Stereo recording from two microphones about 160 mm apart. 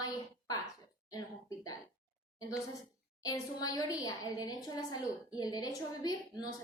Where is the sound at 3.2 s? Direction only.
25° left (ahead or behind).